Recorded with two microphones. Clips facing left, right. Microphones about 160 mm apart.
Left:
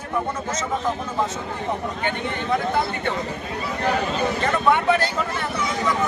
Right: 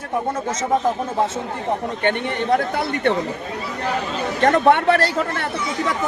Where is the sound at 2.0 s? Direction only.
70° right (ahead or behind).